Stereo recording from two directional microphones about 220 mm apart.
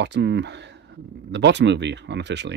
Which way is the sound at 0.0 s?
50° right (ahead or behind).